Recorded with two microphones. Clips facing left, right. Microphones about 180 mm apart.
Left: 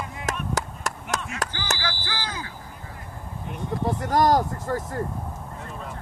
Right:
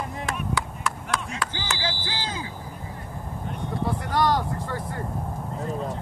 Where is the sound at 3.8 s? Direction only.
45° left (ahead or behind).